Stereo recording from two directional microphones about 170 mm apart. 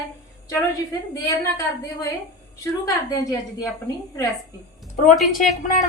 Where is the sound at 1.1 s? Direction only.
20° left (ahead or behind).